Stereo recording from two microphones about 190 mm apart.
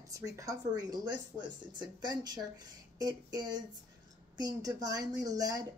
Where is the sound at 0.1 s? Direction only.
15° right (ahead or behind).